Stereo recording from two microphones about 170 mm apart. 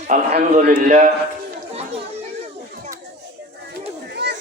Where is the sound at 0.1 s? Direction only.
45° right (ahead or behind).